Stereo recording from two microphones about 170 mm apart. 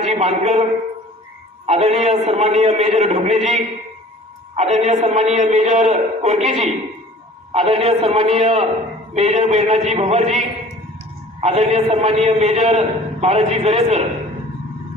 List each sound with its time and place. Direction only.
0.0 s a man's voice: 40° right (ahead or behind)
1.7 s a man's voice: 40° right (ahead or behind)
11.4 s a man's voice: 40° right (ahead or behind)